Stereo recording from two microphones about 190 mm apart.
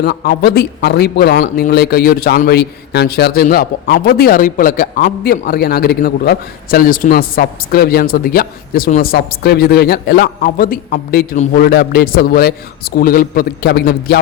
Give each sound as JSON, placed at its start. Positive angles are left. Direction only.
{"t": 0.0, "sound": "a man's voice", "side_deg": 60}